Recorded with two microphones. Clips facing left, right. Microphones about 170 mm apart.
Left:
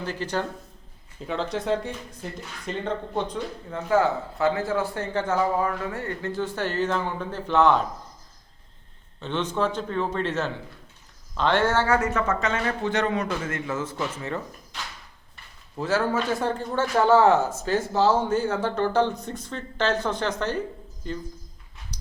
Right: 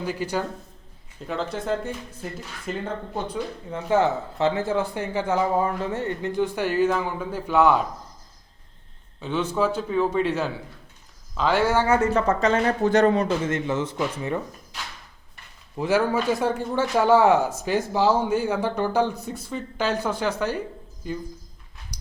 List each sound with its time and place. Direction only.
0.0 s a man's voice: 10° right (ahead or behind)
3.7 s a man's voice: 20° right (ahead or behind)
9.2 s a man's voice: 10° right (ahead or behind)
11.9 s speech: 30° right (ahead or behind)
13.4 s a man's voice: 20° right (ahead or behind)
15.8 s a man's voice: 15° right (ahead or behind)